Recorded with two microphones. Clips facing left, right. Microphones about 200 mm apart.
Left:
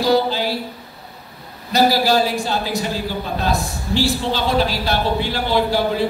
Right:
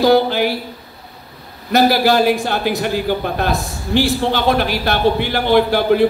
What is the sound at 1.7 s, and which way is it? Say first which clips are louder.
A man's voice: right 3 dB; 55° right (ahead or behind).